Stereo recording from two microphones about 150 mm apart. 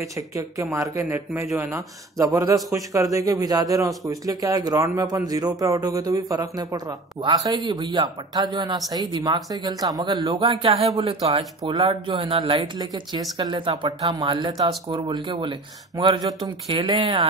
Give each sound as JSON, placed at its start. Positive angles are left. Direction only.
{"t": 0.4, "sound": "speech", "side_deg": -20}
{"t": 11.8, "sound": "speech", "side_deg": -35}